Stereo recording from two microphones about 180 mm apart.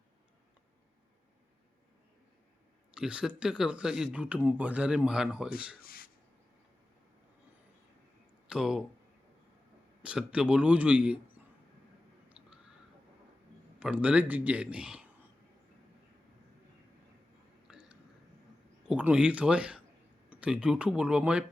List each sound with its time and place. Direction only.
2.9 s speech: 5° right (ahead or behind)
5.8 s a sound: 55° left (ahead or behind)
8.4 s speech: 5° right (ahead or behind)
10.0 s a man's voice: 5° right (ahead or behind)
12.4 s crow: 5° right (ahead or behind)
13.7 s a man's voice: 5° right (ahead or behind)
17.7 s a sound: 5° right (ahead or behind)
18.9 s speech: 5° right (ahead or behind)